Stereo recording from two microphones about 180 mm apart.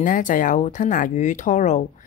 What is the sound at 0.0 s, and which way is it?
Speech, 45° left (ahead or behind).